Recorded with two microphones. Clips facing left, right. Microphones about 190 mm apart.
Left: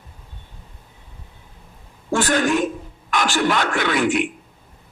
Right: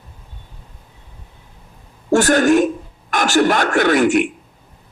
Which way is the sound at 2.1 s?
45° right (ahead or behind).